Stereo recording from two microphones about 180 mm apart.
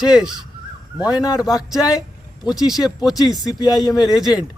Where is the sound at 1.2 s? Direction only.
20° left (ahead or behind).